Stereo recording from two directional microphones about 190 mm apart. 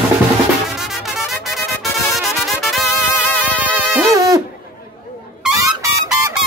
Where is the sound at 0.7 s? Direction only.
Centre (ahead or behind).